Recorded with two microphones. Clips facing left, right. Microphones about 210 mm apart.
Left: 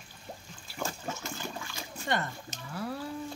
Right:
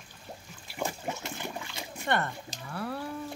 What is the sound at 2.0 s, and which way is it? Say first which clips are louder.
Speech: right 2 dB; 60° right (ahead or behind).